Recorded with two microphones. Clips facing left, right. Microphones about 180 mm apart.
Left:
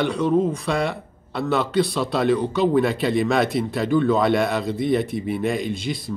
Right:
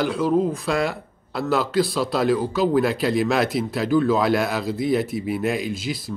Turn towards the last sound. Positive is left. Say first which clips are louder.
# left 1 dB
turn(degrees=0)  # may be behind; listen again after turning